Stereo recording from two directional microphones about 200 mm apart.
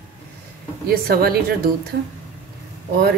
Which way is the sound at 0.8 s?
50° right (ahead or behind).